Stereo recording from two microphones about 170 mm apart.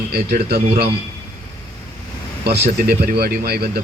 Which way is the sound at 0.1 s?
65° right (ahead or behind).